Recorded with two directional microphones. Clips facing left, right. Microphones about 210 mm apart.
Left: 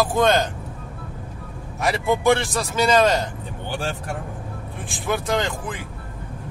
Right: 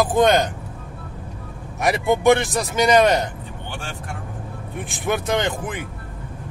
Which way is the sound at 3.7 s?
40° left (ahead or behind).